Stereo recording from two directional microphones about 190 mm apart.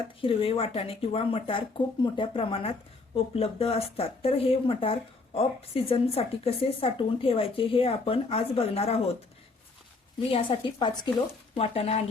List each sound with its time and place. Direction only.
0.2 s speech: 30° left (ahead or behind)
10.2 s speech: 30° left (ahead or behind)